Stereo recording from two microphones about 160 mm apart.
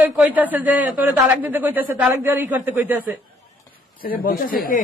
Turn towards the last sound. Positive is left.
turn(degrees=60)  # may be behind; listen again after turning